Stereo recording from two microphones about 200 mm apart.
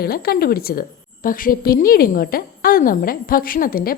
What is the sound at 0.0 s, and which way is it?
A woman's voice, 50° left (ahead or behind).